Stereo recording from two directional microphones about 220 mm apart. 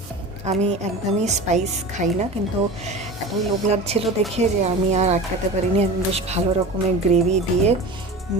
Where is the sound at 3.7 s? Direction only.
30° right (ahead or behind).